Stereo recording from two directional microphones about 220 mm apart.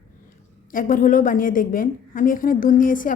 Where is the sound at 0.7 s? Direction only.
40° left (ahead or behind).